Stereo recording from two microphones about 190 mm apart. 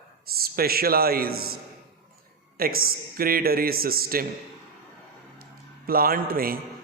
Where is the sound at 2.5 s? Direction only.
50° right (ahead or behind).